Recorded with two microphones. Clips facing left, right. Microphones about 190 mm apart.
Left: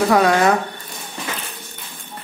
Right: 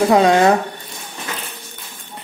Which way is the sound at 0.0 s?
25° right (ahead or behind).